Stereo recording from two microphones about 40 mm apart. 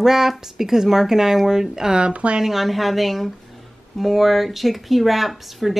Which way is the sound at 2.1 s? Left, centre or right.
Right.